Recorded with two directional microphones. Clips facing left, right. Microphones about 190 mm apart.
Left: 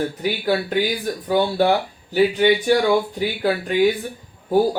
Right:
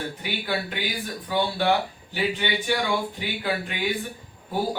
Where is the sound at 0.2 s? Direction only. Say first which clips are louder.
Left 6 dB; 40° left (ahead or behind).